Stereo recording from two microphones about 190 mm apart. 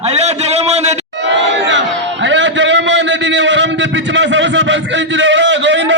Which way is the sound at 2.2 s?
75° right (ahead or behind).